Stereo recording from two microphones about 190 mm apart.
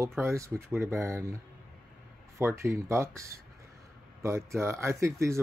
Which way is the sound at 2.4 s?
15° right (ahead or behind).